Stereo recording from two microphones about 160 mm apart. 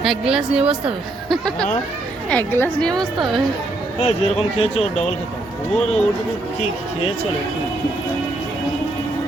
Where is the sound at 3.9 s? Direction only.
40° left (ahead or behind).